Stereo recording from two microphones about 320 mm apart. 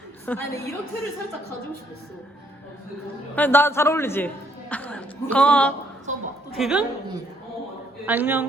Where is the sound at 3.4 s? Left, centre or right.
Centre.